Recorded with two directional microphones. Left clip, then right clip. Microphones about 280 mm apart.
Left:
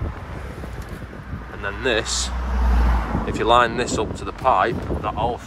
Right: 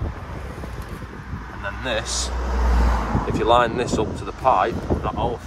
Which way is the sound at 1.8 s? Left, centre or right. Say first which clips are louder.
Left 4 dB; left.